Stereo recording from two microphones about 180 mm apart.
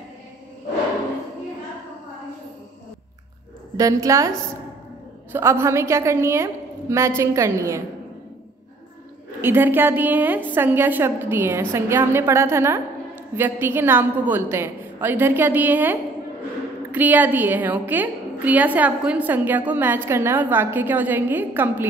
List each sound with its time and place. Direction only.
3.7 s a woman's voice: 20° right (ahead or behind)
5.3 s a woman's voice: 15° right (ahead or behind)
9.4 s a woman's voice: 10° right (ahead or behind)